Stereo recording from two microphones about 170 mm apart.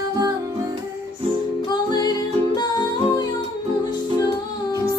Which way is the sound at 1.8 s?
25° left (ahead or behind).